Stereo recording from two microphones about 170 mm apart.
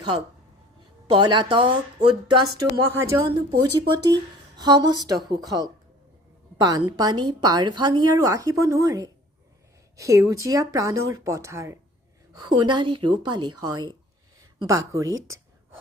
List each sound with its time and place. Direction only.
1.1 s a woman's voice: 30° right (ahead or behind)
2.6 s speech: 15° right (ahead or behind)
3.6 s a woman's voice: 25° right (ahead or behind)